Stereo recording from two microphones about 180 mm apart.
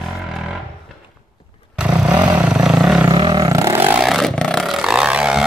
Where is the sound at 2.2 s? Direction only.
5° right (ahead or behind).